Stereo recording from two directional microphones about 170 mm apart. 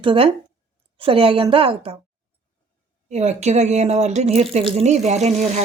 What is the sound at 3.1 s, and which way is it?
Speech, 40° right (ahead or behind).